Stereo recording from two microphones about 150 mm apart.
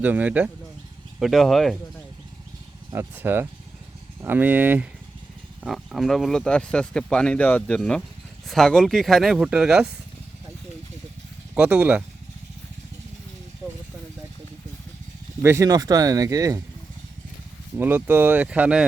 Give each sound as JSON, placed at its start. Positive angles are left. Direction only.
{"t": 0.0, "sound": "speech", "side_deg": -10}
{"t": 1.2, "sound": "speech", "side_deg": 0}
{"t": 2.9, "sound": "speech", "side_deg": -15}
{"t": 5.6, "sound": "speech", "side_deg": 0}
{"t": 11.5, "sound": "speech", "side_deg": -10}
{"t": 15.4, "sound": "speech", "side_deg": -20}
{"t": 17.7, "sound": "speech", "side_deg": -15}